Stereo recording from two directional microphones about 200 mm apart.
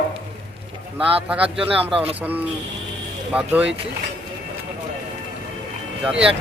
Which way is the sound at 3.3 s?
10° right (ahead or behind).